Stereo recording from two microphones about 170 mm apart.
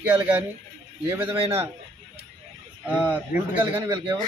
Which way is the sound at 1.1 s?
10° right (ahead or behind).